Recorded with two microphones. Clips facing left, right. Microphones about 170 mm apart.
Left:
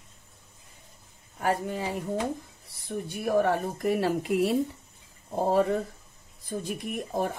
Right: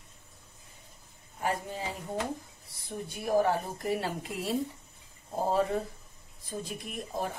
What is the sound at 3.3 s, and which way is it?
Speech, 65° left (ahead or behind).